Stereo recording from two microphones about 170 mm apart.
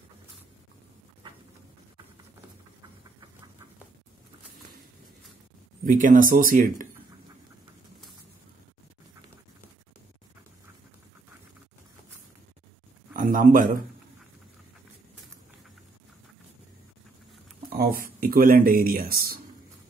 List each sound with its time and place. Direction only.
5.9 s speech: 55° right (ahead or behind)
13.1 s speech: 50° right (ahead or behind)
17.7 s speech: 60° right (ahead or behind)